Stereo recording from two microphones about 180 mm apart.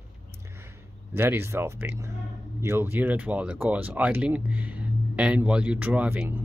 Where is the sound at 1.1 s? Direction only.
15° right (ahead or behind).